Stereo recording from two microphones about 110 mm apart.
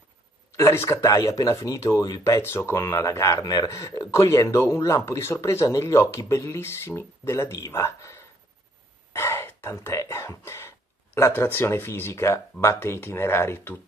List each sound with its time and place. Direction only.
0.6 s speech: 25° left (ahead or behind)
9.1 s gasp: 25° left (ahead or behind)
11.1 s speech: 20° left (ahead or behind)